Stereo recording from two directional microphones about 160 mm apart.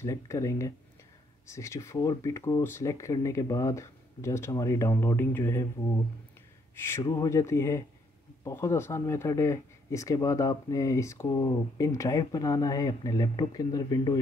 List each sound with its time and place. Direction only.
0.0 s speech: 20° left (ahead or behind)
6.7 s a sound: 15° left (ahead or behind)
7.0 s speech: 20° left (ahead or behind)